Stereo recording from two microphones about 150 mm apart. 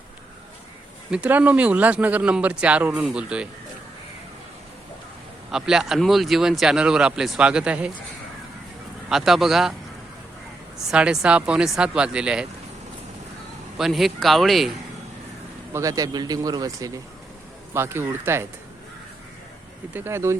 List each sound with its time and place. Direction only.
1.1 s speech: 10° right (ahead or behind)
5.5 s speech: 5° right (ahead or behind)
9.0 s speech: centre (ahead or behind)
10.9 s speech: 5° right (ahead or behind)
13.7 s speech: centre (ahead or behind)
15.7 s speech: 20° right (ahead or behind)
19.9 s speech: 15° right (ahead or behind)